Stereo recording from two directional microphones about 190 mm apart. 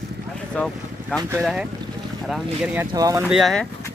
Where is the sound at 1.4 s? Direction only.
Centre (ahead or behind).